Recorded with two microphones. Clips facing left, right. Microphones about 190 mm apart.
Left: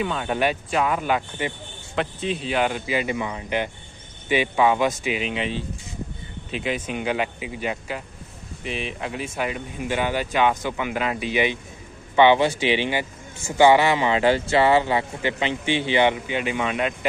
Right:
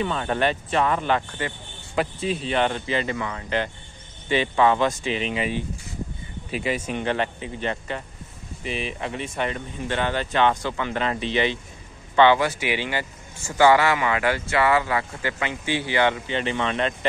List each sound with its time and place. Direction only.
0.0 s speech: 5° left (ahead or behind)
6.5 s speech: centre (ahead or behind)